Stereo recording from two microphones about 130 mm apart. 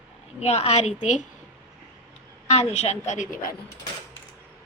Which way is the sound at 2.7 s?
60° left (ahead or behind).